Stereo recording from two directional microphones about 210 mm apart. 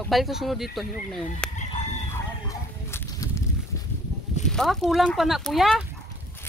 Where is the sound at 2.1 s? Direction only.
10° left (ahead or behind).